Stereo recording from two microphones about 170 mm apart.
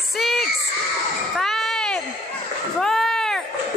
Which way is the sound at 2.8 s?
Centre (ahead or behind).